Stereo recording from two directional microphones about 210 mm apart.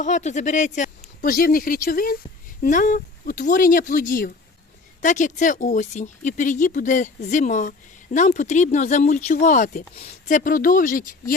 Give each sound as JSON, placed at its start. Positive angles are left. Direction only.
{"t": 0.0, "sound": "speech", "side_deg": 35}